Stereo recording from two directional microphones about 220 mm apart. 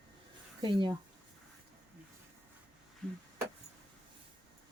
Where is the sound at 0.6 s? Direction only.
20° right (ahead or behind).